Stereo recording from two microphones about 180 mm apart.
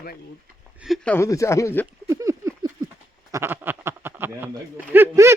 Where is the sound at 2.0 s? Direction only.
15° right (ahead or behind).